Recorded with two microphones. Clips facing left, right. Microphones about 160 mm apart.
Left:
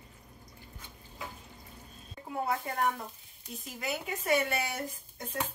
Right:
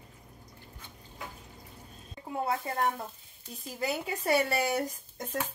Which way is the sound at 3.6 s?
35° right (ahead or behind).